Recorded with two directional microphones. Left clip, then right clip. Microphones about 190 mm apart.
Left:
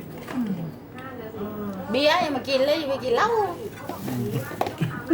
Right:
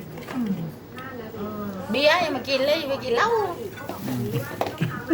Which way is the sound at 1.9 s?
45° left (ahead or behind).